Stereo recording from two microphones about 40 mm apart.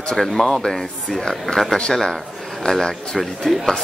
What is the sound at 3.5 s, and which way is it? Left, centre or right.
Speech, centre.